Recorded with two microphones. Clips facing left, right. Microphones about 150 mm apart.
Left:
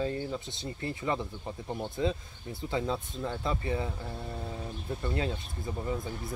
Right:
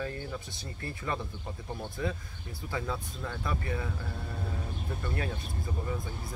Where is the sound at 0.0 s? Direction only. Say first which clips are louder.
Left 4 dB; 25° left (ahead or behind).